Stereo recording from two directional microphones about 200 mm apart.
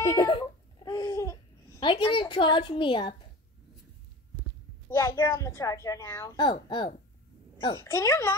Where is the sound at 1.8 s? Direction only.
25° left (ahead or behind).